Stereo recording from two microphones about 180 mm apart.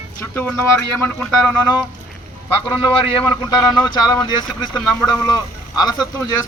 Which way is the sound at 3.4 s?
20° left (ahead or behind).